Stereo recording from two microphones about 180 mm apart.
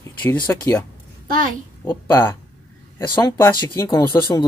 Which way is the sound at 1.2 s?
50° right (ahead or behind).